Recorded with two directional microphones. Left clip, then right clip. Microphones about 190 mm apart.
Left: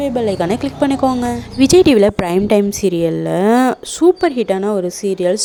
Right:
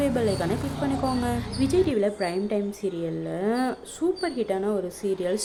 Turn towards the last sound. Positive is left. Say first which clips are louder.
# left 10 dB
turn(degrees=50)  # may be behind; listen again after turning